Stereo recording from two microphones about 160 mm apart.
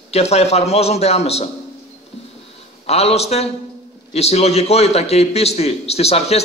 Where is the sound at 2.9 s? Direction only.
40° left (ahead or behind).